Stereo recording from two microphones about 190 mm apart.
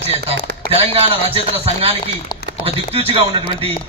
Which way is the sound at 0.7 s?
30° right (ahead or behind).